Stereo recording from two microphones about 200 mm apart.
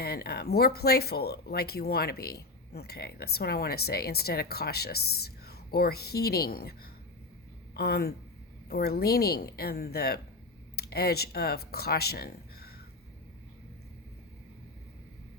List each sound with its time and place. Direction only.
0.0 s speech: 50° left (ahead or behind)